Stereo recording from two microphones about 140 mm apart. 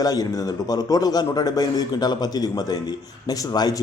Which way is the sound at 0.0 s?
25° left (ahead or behind).